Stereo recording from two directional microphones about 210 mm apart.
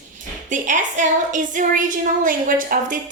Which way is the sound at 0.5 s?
35° right (ahead or behind).